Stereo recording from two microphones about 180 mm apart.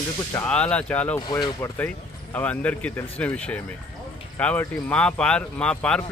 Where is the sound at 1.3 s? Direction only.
25° left (ahead or behind).